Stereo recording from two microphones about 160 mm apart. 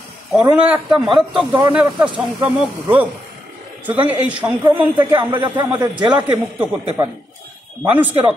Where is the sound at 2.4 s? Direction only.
10° right (ahead or behind).